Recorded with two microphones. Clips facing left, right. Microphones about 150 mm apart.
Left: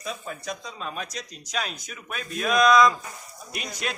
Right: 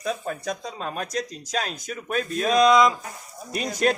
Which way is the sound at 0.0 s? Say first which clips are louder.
Right 6 dB; 50° right (ahead or behind).